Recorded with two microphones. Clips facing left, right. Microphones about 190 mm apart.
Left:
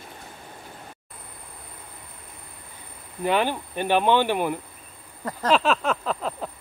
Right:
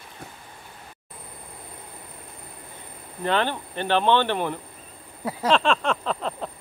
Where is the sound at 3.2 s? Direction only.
10° left (ahead or behind).